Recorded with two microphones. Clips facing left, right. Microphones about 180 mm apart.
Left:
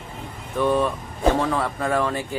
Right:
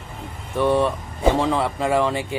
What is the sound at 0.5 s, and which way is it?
Speech, 10° right (ahead or behind).